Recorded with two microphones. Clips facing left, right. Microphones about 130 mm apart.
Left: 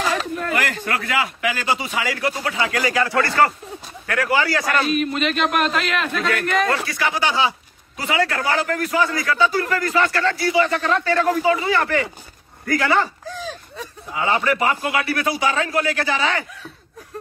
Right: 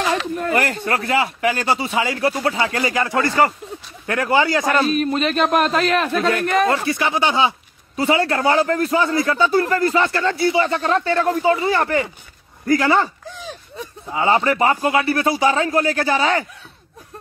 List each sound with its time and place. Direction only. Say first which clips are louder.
0.4 s a man's voice: right 3 dB; 35° right (ahead or behind)
4.9 s a man's voice: right 2 dB; 35° right (ahead or behind)
13.5 s a sound: even; 25° right (ahead or behind)
14.9 s a man's voice: right 4 dB; 30° right (ahead or behind)